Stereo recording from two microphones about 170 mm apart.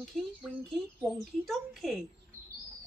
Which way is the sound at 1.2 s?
Centre (ahead or behind).